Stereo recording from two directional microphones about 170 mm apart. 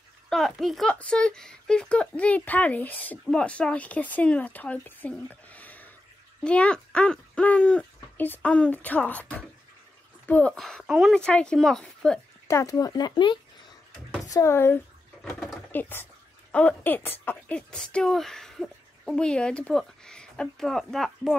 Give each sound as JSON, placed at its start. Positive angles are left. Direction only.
{"t": 0.3, "sound": "speech", "side_deg": 0}
{"t": 12.4, "sound": "speech", "side_deg": 15}
{"t": 15.2, "sound": "a sound", "side_deg": 5}
{"t": 16.5, "sound": "speech", "side_deg": 10}